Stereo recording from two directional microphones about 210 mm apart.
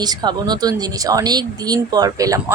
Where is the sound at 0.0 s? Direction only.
20° right (ahead or behind).